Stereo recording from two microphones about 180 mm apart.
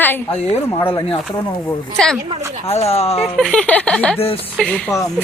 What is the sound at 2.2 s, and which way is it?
Speech, 20° right (ahead or behind).